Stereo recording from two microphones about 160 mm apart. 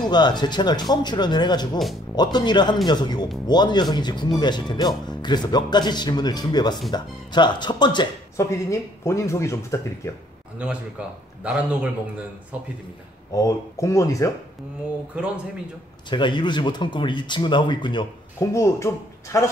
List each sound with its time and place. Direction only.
0.0 s speech: 25° left (ahead or behind)
10.6 s a man's voice: 5° right (ahead or behind)
13.3 s speech: 20° left (ahead or behind)
15.1 s a man's voice: 5° right (ahead or behind)
16.1 s speech: 30° left (ahead or behind)
18.5 s speech: 20° left (ahead or behind)